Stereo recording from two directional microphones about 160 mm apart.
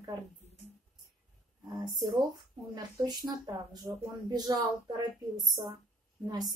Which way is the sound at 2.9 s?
25° right (ahead or behind).